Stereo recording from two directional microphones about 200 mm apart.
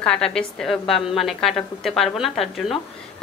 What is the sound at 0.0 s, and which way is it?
A woman's voice, 5° left (ahead or behind).